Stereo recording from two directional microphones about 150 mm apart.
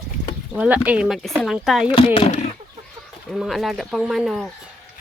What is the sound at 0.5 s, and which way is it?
Speech, 10° right (ahead or behind).